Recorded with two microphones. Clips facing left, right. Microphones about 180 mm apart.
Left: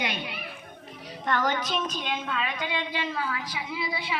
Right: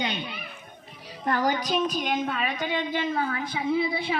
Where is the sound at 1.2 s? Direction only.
35° right (ahead or behind).